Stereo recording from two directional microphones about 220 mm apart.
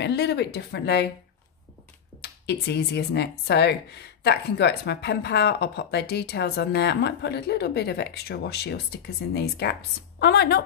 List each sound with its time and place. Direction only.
0.0 s speech: 50° left (ahead or behind)
2.4 s speech: 50° left (ahead or behind)